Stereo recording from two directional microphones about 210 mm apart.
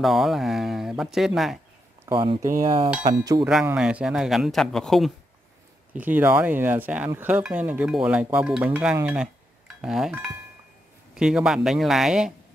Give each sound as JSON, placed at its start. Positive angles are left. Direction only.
{"t": 0.0, "sound": "a man's voice", "side_deg": 0}
{"t": 2.1, "sound": "speech", "side_deg": -25}
{"t": 3.4, "sound": "a man's voice", "side_deg": -5}